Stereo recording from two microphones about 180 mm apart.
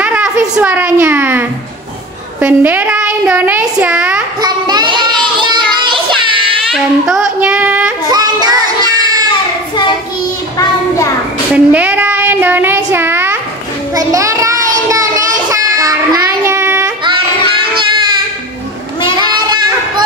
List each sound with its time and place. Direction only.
0.0 s a child's voice: 5° right (ahead or behind)
2.4 s a child's voice: 10° right (ahead or behind)
4.4 s child singing: 25° right (ahead or behind)
6.7 s child singing: 5° right (ahead or behind)
8.1 s music: 20° right (ahead or behind)
11.5 s child singing: 10° right (ahead or behind)
19.1 s child singing: 25° right (ahead or behind)